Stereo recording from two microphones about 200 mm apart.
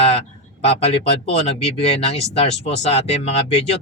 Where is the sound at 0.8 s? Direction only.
30° left (ahead or behind).